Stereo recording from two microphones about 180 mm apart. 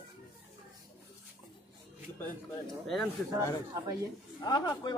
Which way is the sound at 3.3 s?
20° right (ahead or behind).